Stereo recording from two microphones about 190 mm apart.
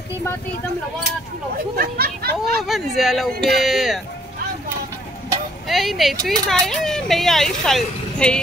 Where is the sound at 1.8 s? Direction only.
55° right (ahead or behind).